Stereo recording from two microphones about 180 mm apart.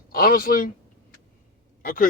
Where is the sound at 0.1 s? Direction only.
55° left (ahead or behind).